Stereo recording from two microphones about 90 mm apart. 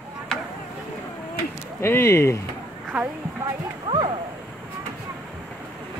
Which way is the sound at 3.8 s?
70° right (ahead or behind).